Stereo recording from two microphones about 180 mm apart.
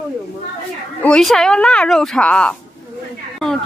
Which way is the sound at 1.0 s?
5° left (ahead or behind).